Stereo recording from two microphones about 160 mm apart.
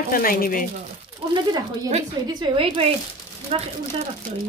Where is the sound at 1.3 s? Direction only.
30° right (ahead or behind).